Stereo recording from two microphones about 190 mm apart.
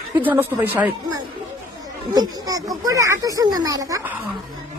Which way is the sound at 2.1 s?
20° right (ahead or behind).